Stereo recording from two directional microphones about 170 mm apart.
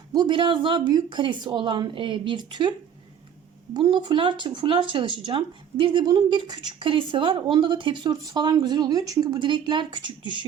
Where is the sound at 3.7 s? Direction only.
25° right (ahead or behind).